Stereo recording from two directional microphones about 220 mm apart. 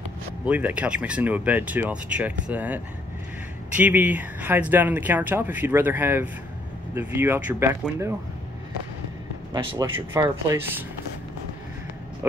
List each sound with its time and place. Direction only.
0.5 s speech: 5° right (ahead or behind)
9.5 s a man's voice: 20° right (ahead or behind)